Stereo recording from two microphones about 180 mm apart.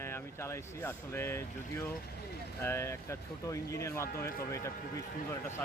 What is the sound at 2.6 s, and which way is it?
Speech, 15° left (ahead or behind).